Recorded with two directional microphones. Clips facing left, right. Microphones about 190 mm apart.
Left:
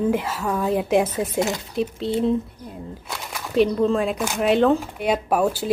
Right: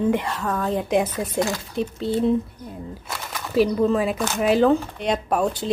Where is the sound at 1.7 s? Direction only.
Centre (ahead or behind).